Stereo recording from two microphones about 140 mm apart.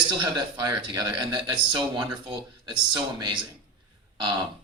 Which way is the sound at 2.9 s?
35° right (ahead or behind).